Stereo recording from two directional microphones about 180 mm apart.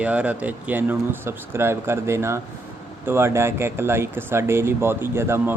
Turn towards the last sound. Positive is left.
turn(degrees=-15)  # may be behind; listen again after turning